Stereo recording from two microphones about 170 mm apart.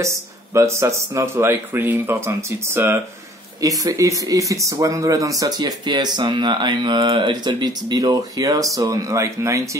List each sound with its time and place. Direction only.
0.0 s speech: 15° right (ahead or behind)